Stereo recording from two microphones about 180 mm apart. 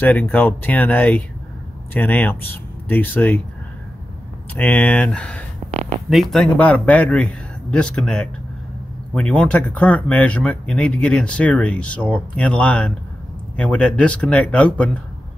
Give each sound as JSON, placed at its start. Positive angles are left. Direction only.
{"t": 0.0, "sound": "speech", "side_deg": 10}
{"t": 4.6, "sound": "speech", "side_deg": 10}
{"t": 5.7, "sound": "a sound", "side_deg": -35}
{"t": 6.0, "sound": "speech", "side_deg": 0}